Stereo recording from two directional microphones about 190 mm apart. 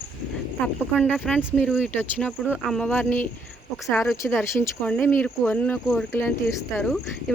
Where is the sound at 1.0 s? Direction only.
5° left (ahead or behind).